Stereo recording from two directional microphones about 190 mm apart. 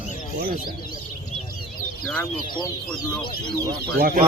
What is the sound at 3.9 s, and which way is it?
Speech, 50° right (ahead or behind).